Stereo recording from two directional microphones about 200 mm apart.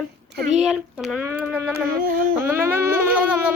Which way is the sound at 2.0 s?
45° right (ahead or behind).